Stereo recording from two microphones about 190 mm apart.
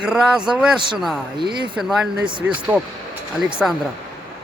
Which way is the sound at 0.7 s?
25° right (ahead or behind).